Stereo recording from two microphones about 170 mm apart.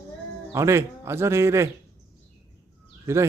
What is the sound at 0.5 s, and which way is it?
Speech, 15° right (ahead or behind).